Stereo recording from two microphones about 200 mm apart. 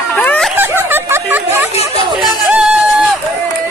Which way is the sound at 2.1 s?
5° right (ahead or behind).